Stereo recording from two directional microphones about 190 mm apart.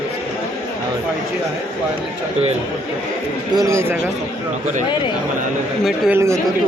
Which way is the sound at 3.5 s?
15° right (ahead or behind).